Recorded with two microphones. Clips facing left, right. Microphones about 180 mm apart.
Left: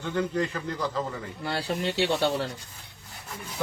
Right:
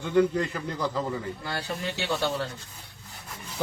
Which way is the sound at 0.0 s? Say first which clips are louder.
Right 4 dB; 10° right (ahead or behind).